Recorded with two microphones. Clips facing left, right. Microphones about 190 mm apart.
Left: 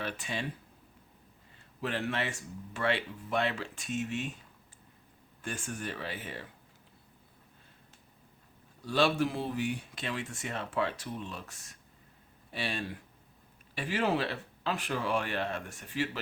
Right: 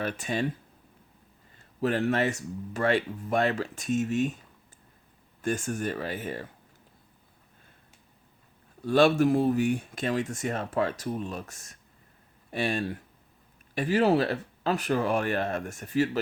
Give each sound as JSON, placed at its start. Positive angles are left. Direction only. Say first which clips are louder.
{"t": 0.0, "sound": "speech", "louder": "right 7 dB", "side_deg": -45}
{"t": 1.8, "sound": "speech", "louder": "right 8 dB", "side_deg": -40}
{"t": 5.4, "sound": "speech", "louder": "right 9 dB", "side_deg": -40}
{"t": 8.8, "sound": "speech", "louder": "right 7 dB", "side_deg": -50}